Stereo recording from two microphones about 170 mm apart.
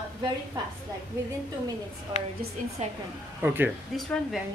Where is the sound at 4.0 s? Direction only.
Centre (ahead or behind).